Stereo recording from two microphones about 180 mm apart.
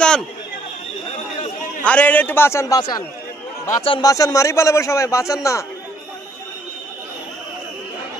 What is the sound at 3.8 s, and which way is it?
A man's voice, 25° left (ahead or behind).